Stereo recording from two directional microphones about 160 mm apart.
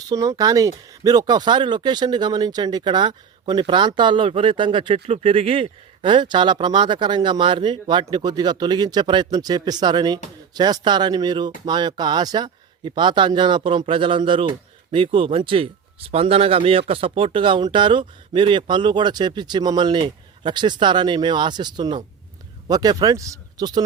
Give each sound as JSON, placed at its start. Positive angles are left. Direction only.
{"t": 0.1, "sound": "speech", "side_deg": -20}